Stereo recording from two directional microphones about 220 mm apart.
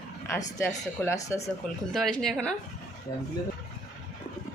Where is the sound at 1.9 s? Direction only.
Centre (ahead or behind).